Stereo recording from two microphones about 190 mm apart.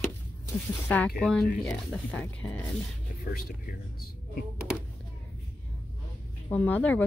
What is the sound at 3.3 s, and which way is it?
Speech, 50° left (ahead or behind).